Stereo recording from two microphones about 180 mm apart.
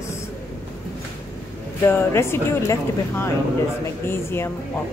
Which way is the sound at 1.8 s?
15° left (ahead or behind).